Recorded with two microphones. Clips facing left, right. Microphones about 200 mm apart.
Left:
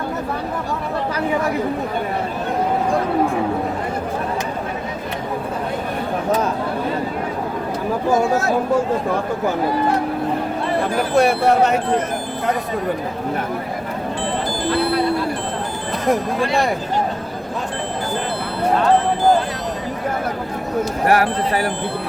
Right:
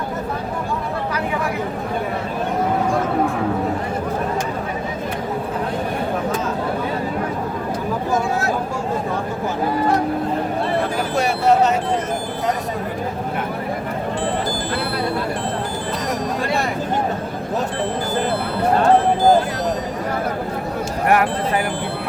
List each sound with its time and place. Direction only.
11.2 s speech: 55° left (ahead or behind)
21.1 s speech: 35° left (ahead or behind)